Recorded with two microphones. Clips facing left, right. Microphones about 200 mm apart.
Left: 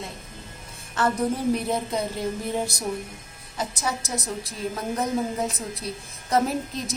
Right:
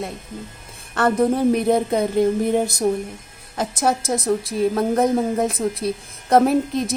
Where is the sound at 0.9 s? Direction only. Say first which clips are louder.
Right 6 dB; 60° right (ahead or behind).